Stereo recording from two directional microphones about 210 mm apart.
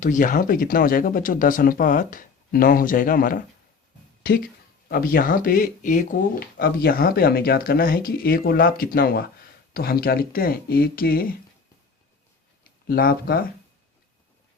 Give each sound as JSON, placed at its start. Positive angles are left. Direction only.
{"t": 0.0, "sound": "speech", "side_deg": 40}
{"t": 12.9, "sound": "speech", "side_deg": 45}